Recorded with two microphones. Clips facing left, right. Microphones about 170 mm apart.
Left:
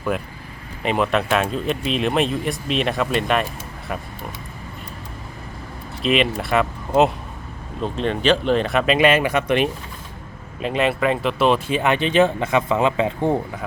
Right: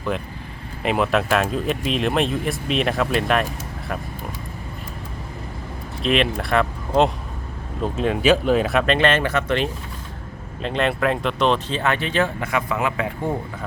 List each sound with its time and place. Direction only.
0.8 s speech: centre (ahead or behind)
6.0 s speech: centre (ahead or behind)
9.0 s speech: 10° left (ahead or behind)
10.6 s speech: 5° left (ahead or behind); by 13.3 s 25° left (ahead or behind)